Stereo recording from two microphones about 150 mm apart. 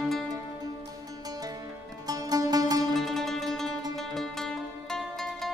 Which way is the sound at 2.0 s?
25° right (ahead or behind).